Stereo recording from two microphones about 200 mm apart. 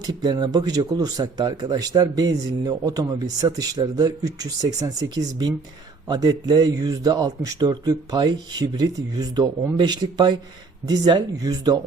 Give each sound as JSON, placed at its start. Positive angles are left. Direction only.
{"t": 0.0, "sound": "speech", "side_deg": -20}